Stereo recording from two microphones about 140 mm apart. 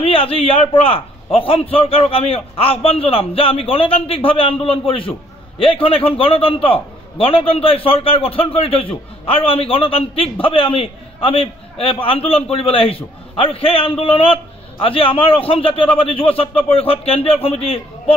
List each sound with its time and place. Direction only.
0.0 s a man's voice: 40° left (ahead or behind)